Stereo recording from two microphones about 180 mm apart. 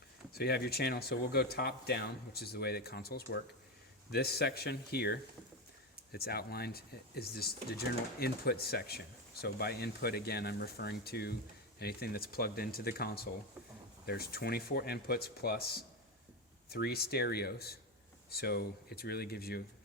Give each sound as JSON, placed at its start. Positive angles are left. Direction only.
{"t": 0.3, "sound": "speech", "side_deg": 60}